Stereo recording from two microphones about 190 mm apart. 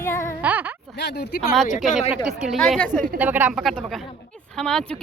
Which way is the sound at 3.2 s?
10° right (ahead or behind).